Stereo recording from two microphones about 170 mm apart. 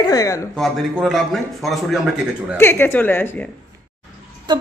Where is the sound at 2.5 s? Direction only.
10° left (ahead or behind).